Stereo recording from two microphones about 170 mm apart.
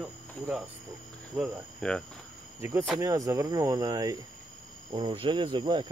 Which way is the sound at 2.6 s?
15° right (ahead or behind).